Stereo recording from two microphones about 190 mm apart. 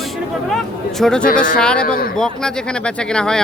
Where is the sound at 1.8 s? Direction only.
50° left (ahead or behind).